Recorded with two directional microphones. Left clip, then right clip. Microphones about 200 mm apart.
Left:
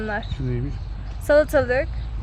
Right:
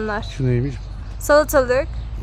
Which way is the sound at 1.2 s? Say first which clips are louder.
Right 3 dB; 15° right (ahead or behind).